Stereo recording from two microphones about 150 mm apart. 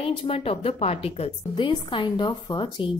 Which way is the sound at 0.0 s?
35° left (ahead or behind).